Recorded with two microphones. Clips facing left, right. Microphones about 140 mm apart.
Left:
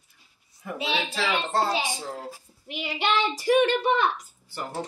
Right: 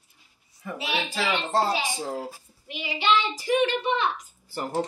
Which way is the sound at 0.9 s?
Centre (ahead or behind).